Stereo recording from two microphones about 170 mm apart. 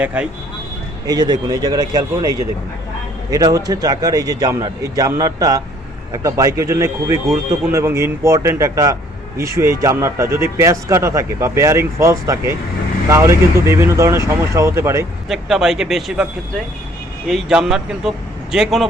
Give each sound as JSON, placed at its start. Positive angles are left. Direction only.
{"t": 0.0, "sound": "a man's voice", "side_deg": -10}
{"t": 1.0, "sound": "a man's voice", "side_deg": -25}
{"t": 15.3, "sound": "speech", "side_deg": 0}
{"t": 17.2, "sound": "speech", "side_deg": -5}